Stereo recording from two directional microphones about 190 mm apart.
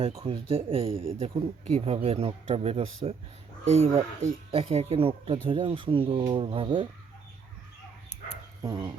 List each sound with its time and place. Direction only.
0.3 s speech: 30° right (ahead or behind)
8.6 s speech: 25° right (ahead or behind)